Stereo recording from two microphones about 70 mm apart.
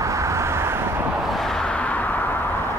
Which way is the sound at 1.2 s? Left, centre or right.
Centre.